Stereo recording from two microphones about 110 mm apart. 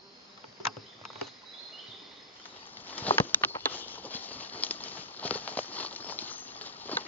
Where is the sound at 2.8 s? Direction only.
15° left (ahead or behind).